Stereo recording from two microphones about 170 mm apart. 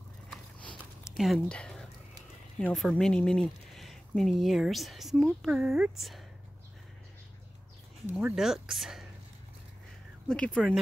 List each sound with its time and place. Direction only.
0.3 s sniff: 5° left (ahead or behind)
1.1 s speech: centre (ahead or behind)
8.2 s speech: 5° right (ahead or behind)
10.2 s speech: 5° left (ahead or behind)